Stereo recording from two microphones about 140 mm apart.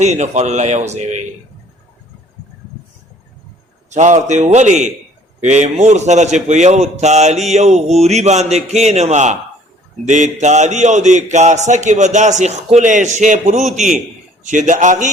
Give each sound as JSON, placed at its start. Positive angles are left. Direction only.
{"t": 0.0, "sound": "speech", "side_deg": -55}
{"t": 3.8, "sound": "a man's voice", "side_deg": -60}